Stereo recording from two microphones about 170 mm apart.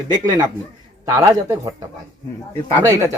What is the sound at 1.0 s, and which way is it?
Speech, 15° right (ahead or behind).